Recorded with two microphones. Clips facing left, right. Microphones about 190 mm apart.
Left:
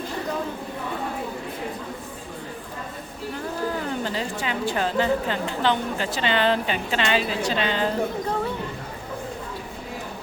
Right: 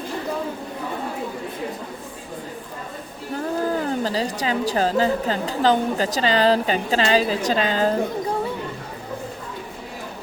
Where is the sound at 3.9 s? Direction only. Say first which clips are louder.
Right 4 dB; 35° right (ahead or behind).